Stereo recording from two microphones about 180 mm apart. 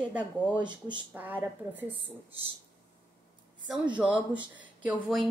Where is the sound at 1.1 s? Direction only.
10° right (ahead or behind).